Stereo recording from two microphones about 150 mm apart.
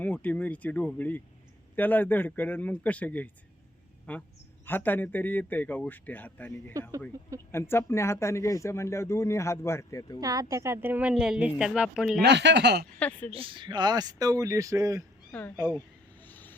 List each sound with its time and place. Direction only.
0.0 s speech: 10° left (ahead or behind)
10.2 s a woman's voice: 25° right (ahead or behind); by 12.2 s 5° right (ahead or behind)
13.0 s speech: 10° left (ahead or behind)
13.3 s speech: 35° right (ahead or behind)
15.3 s speech: 10° left (ahead or behind)
15.5 s a woman's voice: 10° right (ahead or behind)
16.2 s vehicle: 10° left (ahead or behind)